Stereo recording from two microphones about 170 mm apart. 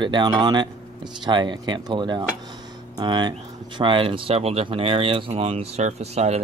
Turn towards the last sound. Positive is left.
turn(degrees=-40)  # may be behind; listen again after turning